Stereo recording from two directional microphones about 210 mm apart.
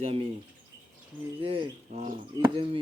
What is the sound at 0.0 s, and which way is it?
Speech, 25° right (ahead or behind).